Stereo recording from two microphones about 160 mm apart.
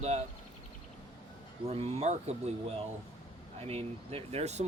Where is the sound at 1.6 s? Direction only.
40° right (ahead or behind).